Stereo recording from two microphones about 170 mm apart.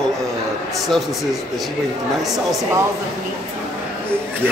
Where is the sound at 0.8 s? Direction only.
Centre (ahead or behind).